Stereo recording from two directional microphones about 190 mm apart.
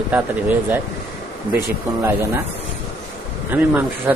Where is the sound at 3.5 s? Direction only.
10° right (ahead or behind).